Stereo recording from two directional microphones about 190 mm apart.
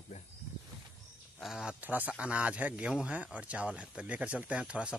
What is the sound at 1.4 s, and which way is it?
A man's voice, 5° right (ahead or behind).